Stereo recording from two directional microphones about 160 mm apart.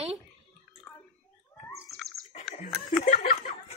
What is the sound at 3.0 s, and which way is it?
Chuckle, 45° left (ahead or behind).